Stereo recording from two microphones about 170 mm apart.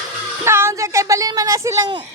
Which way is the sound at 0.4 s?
15° right (ahead or behind).